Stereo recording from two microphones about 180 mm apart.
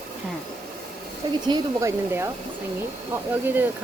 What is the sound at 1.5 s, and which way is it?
Speech, 15° right (ahead or behind).